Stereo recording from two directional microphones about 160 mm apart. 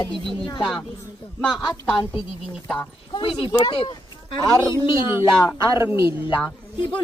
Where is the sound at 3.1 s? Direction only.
30° left (ahead or behind).